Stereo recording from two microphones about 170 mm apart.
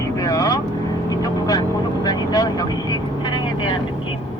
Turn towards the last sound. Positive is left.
turn(degrees=25)  # may be behind; listen again after turning